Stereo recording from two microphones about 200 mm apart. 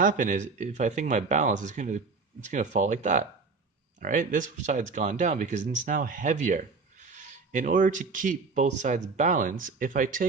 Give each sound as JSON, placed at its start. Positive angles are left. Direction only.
{"t": 0.0, "sound": "speech", "side_deg": -40}